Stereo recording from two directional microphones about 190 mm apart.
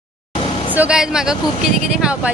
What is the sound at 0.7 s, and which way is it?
Speech, 5° right (ahead or behind).